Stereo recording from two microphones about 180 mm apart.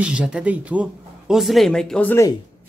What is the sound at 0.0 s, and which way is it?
Speech, 5° right (ahead or behind).